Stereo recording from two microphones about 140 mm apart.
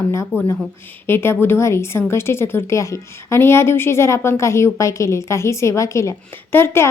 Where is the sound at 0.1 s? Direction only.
20° left (ahead or behind).